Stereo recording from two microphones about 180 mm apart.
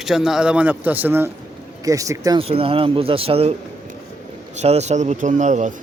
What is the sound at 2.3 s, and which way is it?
Speech, 30° right (ahead or behind).